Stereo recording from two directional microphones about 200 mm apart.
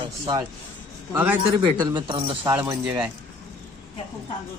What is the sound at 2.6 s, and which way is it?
Speech, 5° right (ahead or behind).